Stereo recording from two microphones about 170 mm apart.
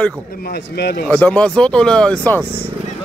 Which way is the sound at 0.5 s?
70° left (ahead or behind).